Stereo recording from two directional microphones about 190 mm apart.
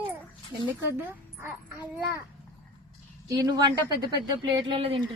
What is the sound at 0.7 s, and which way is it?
Speech, 10° right (ahead or behind).